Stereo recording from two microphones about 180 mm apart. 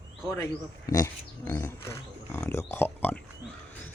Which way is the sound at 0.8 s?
20° left (ahead or behind).